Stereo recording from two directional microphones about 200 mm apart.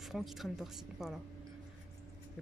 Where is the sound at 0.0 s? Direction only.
Centre (ahead or behind).